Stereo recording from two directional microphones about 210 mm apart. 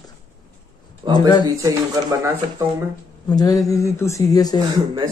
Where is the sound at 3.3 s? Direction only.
20° left (ahead or behind).